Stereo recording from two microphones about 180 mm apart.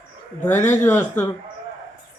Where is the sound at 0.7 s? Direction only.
10° left (ahead or behind).